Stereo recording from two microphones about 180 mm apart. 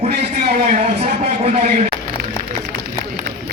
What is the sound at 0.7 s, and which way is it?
Speech, 45° right (ahead or behind).